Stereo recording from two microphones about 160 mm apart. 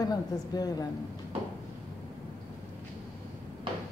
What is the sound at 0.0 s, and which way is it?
Speech, 25° left (ahead or behind).